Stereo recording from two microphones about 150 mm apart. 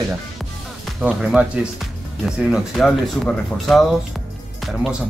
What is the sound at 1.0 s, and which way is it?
Speech, 5° right (ahead or behind).